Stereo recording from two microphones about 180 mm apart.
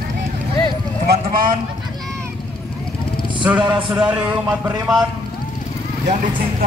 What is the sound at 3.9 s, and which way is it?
Speech, 5° right (ahead or behind).